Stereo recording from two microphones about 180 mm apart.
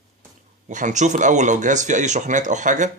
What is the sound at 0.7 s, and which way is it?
Speech, 45° right (ahead or behind).